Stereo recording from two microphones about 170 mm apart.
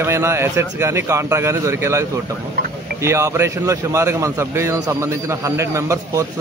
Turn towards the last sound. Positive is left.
turn(degrees=-20)  # may be behind; listen again after turning